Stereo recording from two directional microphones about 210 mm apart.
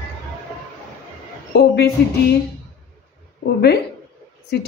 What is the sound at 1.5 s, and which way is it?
Speech, 50° left (ahead or behind).